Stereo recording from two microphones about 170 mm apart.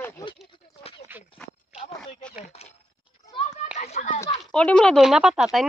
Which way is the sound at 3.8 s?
45° left (ahead or behind).